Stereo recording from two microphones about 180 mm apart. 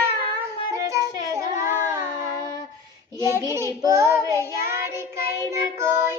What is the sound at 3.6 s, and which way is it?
Child singing, 15° right (ahead or behind).